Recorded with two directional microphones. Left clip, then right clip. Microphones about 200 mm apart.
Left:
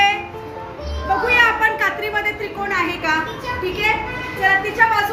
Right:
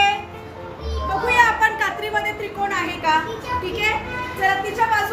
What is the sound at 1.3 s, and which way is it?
A woman's voice, 20° right (ahead or behind).